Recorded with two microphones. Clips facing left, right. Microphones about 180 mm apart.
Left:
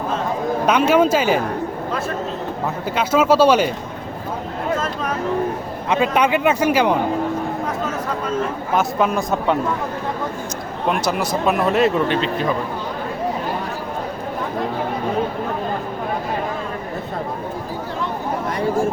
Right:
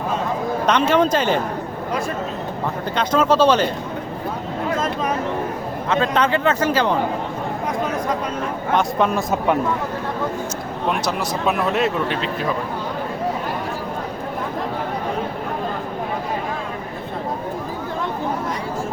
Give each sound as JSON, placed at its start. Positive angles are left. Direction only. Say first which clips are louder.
{"t": 0.6, "sound": "speech", "louder": "left 2 dB", "side_deg": 10}
{"t": 2.9, "sound": "speech", "louder": "left 2 dB", "side_deg": 5}
{"t": 5.9, "sound": "speech", "louder": "left 2 dB", "side_deg": 10}
{"t": 8.7, "sound": "speech", "louder": "even", "side_deg": 0}
{"t": 10.8, "sound": "speech", "louder": "left 2 dB", "side_deg": 0}